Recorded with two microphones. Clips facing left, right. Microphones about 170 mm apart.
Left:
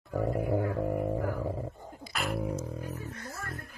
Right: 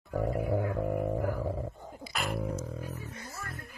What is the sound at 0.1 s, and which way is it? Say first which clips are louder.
Speech: left 1 dB; 5° right (ahead or behind).